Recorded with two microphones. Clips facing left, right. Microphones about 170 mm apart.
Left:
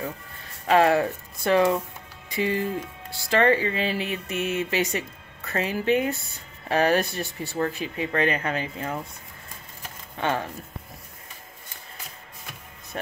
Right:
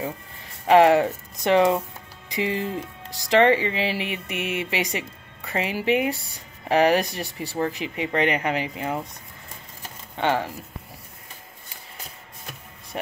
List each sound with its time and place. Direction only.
0.7 s speech: 20° right (ahead or behind)
3.8 s a sound: 90° right
4.1 s speech: 15° right (ahead or behind)
10.1 s speech: 20° right (ahead or behind)
12.9 s speech: 20° right (ahead or behind)